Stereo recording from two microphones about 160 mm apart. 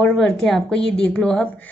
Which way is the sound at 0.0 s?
5° left (ahead or behind).